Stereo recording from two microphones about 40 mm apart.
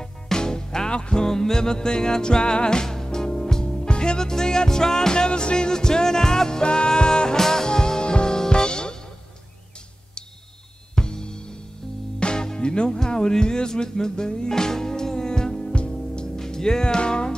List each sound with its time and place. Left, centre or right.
0.0 s music: centre
11.0 s music: centre